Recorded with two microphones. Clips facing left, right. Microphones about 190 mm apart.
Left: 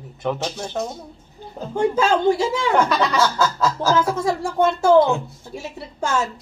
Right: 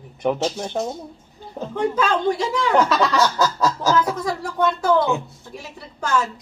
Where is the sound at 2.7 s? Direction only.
Centre (ahead or behind).